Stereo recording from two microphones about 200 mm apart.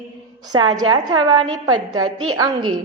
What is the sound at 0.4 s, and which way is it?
Speech, 20° right (ahead or behind).